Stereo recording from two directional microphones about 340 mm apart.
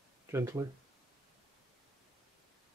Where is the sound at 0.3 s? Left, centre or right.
Centre.